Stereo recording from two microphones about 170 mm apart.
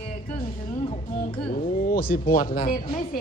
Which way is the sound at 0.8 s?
30° left (ahead or behind).